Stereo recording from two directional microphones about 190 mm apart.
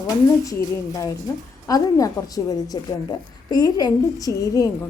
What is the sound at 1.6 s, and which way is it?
A woman's voice, 20° left (ahead or behind).